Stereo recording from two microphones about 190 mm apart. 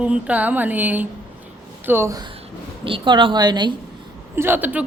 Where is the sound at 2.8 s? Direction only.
25° right (ahead or behind).